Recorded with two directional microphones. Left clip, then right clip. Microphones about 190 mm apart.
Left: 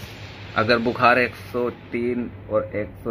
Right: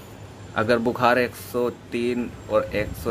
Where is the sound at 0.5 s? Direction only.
10° right (ahead or behind).